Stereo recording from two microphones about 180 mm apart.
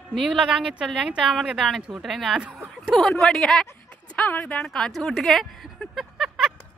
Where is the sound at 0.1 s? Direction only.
Centre (ahead or behind).